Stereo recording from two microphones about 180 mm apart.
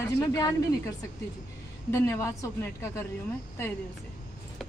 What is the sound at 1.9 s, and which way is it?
A woman's voice, 15° left (ahead or behind).